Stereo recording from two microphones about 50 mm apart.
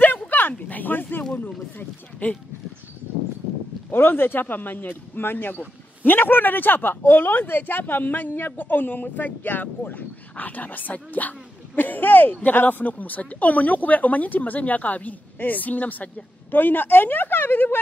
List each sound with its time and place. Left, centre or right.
0.3 s a sound: left
1.3 s speech: left
3.9 s speech: left